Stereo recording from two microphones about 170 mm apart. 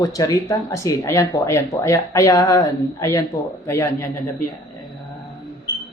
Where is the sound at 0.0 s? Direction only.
20° left (ahead or behind).